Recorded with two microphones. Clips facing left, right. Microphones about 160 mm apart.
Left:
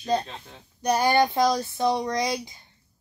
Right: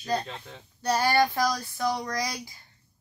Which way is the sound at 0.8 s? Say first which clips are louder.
Left 3 dB; 15° left (ahead or behind).